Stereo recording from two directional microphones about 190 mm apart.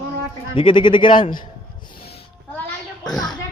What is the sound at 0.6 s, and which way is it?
Speech, 25° left (ahead or behind).